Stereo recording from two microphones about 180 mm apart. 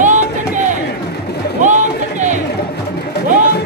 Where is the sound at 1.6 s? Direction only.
45° right (ahead or behind).